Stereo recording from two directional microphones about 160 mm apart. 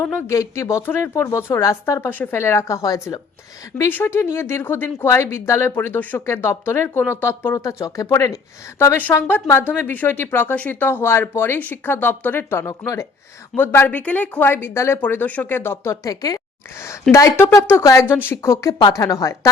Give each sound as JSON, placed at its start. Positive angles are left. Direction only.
{"t": 0.3, "sound": "speech", "side_deg": 20}